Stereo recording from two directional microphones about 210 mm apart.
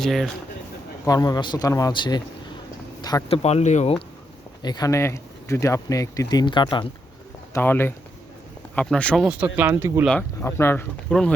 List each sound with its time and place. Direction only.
0.0 s speech: centre (ahead or behind)
1.0 s speech: 20° left (ahead or behind); by 3.9 s 35° left (ahead or behind)
4.6 s speech: 20° left (ahead or behind)
7.5 s speech: 10° left (ahead or behind); by 10.1 s 10° right (ahead or behind)
10.1 s speech: 10° left (ahead or behind)